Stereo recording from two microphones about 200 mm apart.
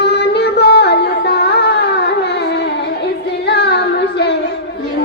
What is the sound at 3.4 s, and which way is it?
Child singing, 55° left (ahead or behind).